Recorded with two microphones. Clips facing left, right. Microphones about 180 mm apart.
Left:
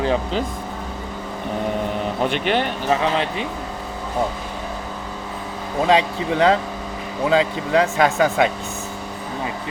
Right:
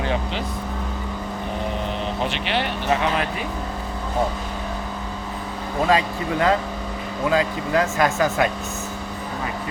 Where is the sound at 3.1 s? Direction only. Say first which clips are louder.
Left 2 dB; 25° left (ahead or behind).